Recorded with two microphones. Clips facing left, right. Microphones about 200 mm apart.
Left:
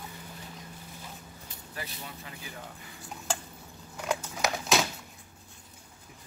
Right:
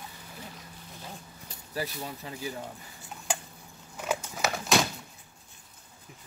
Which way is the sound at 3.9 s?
5° right (ahead or behind).